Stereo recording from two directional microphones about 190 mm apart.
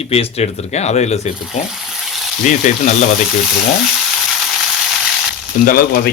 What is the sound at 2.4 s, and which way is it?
Speech, 40° left (ahead or behind).